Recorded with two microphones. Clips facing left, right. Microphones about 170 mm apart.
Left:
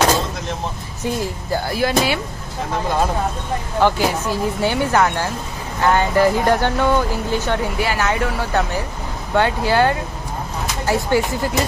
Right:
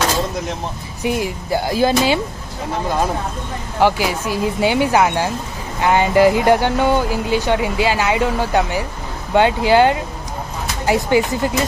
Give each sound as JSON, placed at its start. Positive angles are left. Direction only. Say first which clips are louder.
{"t": 1.0, "sound": "speech", "louder": "right 3 dB", "side_deg": -15}
{"t": 3.8, "sound": "speech", "louder": "right 1 dB", "side_deg": -15}